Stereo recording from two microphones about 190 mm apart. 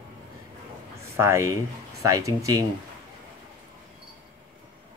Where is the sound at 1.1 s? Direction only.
15° right (ahead or behind).